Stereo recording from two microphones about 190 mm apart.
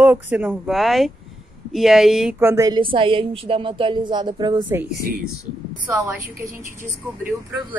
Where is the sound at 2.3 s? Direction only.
15° right (ahead or behind).